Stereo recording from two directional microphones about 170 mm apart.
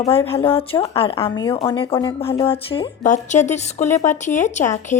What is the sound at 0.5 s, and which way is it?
Speech, 35° left (ahead or behind).